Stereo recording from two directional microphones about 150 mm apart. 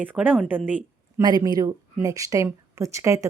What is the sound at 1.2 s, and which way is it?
A woman's voice, 25° right (ahead or behind).